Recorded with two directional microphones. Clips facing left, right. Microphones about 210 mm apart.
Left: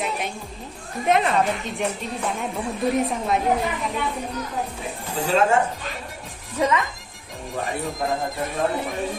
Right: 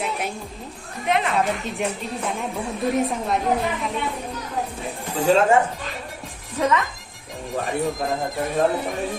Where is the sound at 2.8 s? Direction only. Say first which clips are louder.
Even; centre (ahead or behind).